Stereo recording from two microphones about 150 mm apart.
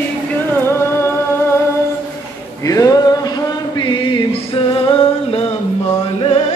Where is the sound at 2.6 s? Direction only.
20° left (ahead or behind).